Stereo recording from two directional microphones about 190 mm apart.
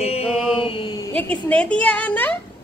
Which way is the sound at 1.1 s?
5° left (ahead or behind).